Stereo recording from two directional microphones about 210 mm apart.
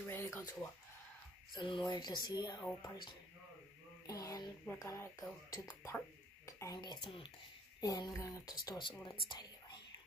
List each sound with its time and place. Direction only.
0.1 s speech: 10° left (ahead or behind)
1.5 s speech: 20° left (ahead or behind)
4.1 s a sound: 15° left (ahead or behind)
4.7 s speech: 15° left (ahead or behind)
9.3 s whispering: 20° left (ahead or behind)